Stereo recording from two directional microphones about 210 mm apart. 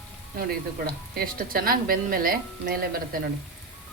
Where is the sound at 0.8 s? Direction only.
45° right (ahead or behind).